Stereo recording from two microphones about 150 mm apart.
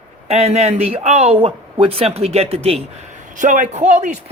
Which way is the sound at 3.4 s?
55° right (ahead or behind).